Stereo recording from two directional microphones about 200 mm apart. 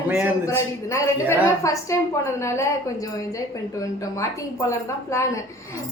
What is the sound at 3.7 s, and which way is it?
A woman's voice, 15° left (ahead or behind).